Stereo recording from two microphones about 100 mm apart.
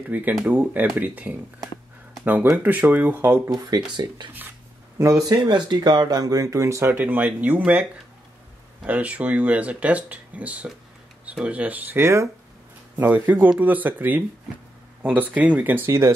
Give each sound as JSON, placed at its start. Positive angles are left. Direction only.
{"t": 0.1, "sound": "speech", "side_deg": -15}
{"t": 2.5, "sound": "speech", "side_deg": -15}
{"t": 3.4, "sound": "speech", "side_deg": -40}
{"t": 8.8, "sound": "speech", "side_deg": -15}